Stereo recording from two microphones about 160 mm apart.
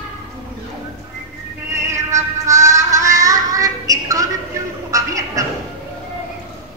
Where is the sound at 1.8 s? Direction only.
20° right (ahead or behind).